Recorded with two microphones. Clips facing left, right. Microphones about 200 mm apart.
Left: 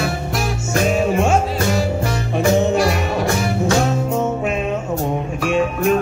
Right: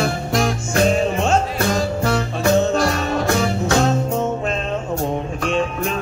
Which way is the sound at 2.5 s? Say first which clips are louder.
Even; 10° left (ahead or behind).